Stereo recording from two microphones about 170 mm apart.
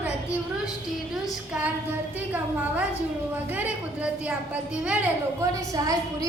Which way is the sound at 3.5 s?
10° right (ahead or behind).